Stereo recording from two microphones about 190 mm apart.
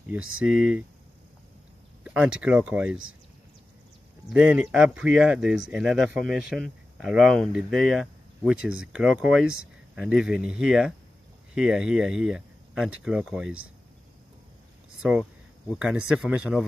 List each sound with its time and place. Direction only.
0.5 s speech: 5° right (ahead or behind)
2.0 s speech: 5° right (ahead or behind)
4.3 s speech: 5° right (ahead or behind)
15.0 s speech: 5° right (ahead or behind)